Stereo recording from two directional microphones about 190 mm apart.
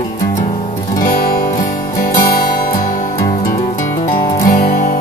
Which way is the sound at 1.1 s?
50° left (ahead or behind).